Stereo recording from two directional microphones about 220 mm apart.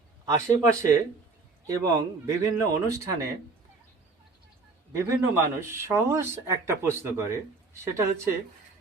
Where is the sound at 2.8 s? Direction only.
15° right (ahead or behind).